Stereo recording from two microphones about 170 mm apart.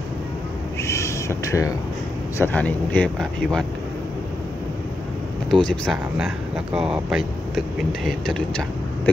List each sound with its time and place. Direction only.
0.8 s a sound: 15° left (ahead or behind)
2.3 s speech: 10° left (ahead or behind)
5.5 s speech: 5° left (ahead or behind)